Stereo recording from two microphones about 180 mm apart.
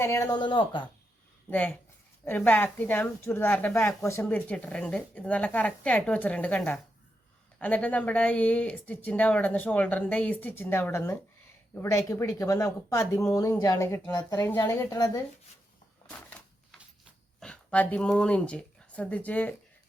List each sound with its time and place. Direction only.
0.0 s speech: 15° left (ahead or behind)
1.5 s speech: 10° left (ahead or behind)
17.4 s speech: 5° left (ahead or behind)